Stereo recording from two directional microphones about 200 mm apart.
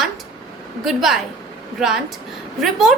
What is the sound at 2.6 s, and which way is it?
Speech, centre (ahead or behind).